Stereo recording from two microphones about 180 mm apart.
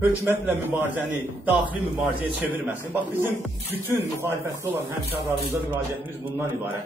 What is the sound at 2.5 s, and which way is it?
Speech, 10° right (ahead or behind).